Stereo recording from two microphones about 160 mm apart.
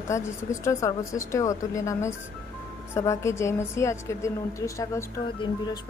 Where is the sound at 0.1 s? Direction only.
20° left (ahead or behind).